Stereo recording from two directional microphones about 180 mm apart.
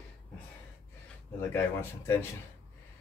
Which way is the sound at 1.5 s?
15° left (ahead or behind).